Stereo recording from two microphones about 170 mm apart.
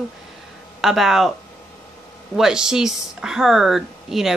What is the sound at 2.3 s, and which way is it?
Speech, 5° right (ahead or behind).